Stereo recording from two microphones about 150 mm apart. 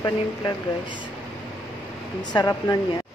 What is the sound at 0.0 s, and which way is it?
Speech, 25° left (ahead or behind).